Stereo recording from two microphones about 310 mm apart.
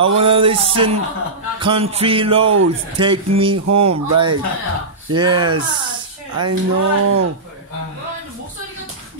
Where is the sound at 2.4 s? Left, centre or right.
Right.